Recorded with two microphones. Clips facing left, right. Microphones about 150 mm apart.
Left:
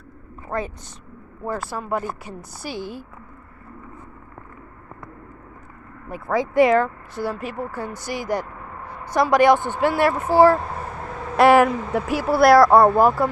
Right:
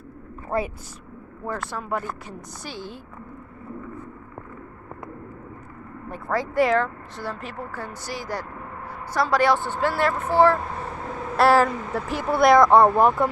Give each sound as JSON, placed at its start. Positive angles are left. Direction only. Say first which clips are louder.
{"t": 0.5, "sound": "speech", "louder": "right 1 dB", "side_deg": -10}
{"t": 1.4, "sound": "speech", "louder": "left 3 dB", "side_deg": 5}
{"t": 6.0, "sound": "speech", "louder": "left 3 dB", "side_deg": 10}